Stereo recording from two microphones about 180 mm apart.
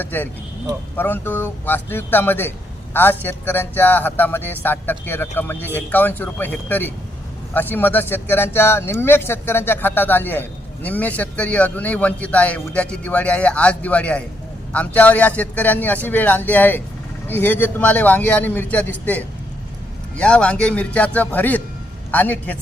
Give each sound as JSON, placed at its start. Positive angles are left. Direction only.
{"t": 0.0, "sound": "a man's voice", "side_deg": 10}